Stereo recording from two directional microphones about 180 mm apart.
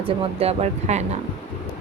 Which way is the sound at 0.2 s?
35° right (ahead or behind).